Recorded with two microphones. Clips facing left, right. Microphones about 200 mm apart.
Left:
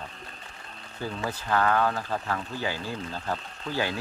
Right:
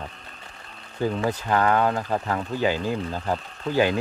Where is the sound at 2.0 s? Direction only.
45° right (ahead or behind).